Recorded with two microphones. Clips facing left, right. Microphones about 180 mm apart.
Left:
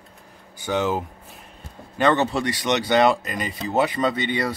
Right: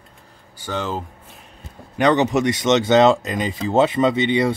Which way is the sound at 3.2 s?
90° right.